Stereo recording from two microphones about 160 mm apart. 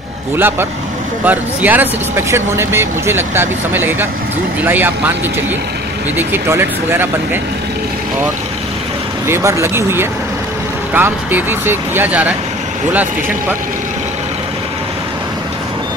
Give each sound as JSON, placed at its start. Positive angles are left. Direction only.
{"t": 0.4, "sound": "speech", "side_deg": -15}
{"t": 6.1, "sound": "speech", "side_deg": -15}
{"t": 9.3, "sound": "speech", "side_deg": -15}